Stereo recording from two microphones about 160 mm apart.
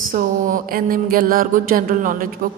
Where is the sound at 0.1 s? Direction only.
60° right (ahead or behind).